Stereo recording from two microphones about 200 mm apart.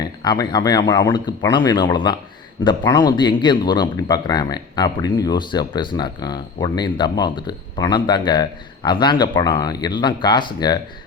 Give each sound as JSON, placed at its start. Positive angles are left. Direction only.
{"t": 0.0, "sound": "speech", "side_deg": 20}